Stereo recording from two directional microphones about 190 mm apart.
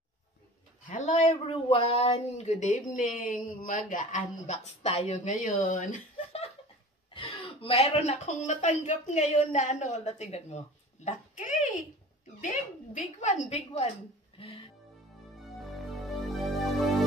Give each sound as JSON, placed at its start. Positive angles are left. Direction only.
{"t": 0.8, "sound": "speech", "side_deg": 40}
{"t": 6.1, "sound": "laughter", "side_deg": 30}
{"t": 7.2, "sound": "speech", "side_deg": 25}
{"t": 12.9, "sound": "speech", "side_deg": 35}
{"t": 14.4, "sound": "music", "side_deg": 30}
{"t": 16.3, "sound": "music", "side_deg": 0}